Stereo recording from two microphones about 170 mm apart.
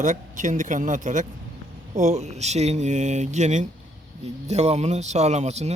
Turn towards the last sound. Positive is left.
turn(degrees=-40)  # may be behind; listen again after turning